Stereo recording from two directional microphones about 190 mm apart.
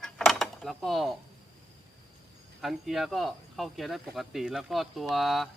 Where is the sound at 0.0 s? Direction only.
Centre (ahead or behind).